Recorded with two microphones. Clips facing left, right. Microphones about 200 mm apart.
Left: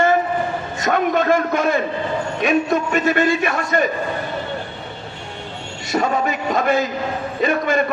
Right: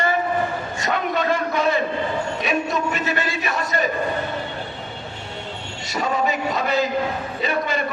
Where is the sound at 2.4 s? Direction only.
50° left (ahead or behind).